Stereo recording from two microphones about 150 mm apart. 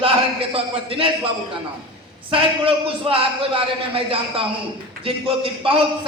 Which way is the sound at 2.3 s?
35° right (ahead or behind).